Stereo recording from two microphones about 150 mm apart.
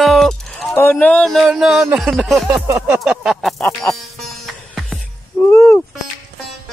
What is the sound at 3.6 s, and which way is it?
Music, 15° left (ahead or behind).